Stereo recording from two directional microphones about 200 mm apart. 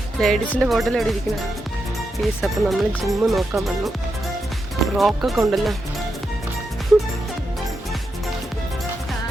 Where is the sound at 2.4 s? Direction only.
Centre (ahead or behind).